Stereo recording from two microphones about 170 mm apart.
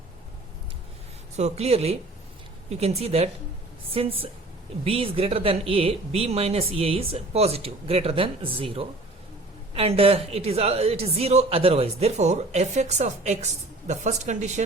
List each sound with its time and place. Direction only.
1.4 s a woman's voice: 40° right (ahead or behind)